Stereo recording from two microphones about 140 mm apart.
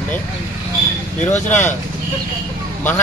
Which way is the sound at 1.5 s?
15° left (ahead or behind).